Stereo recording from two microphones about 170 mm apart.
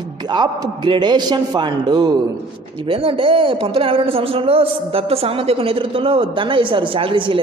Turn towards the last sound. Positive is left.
turn(degrees=-30)  # may be behind; listen again after turning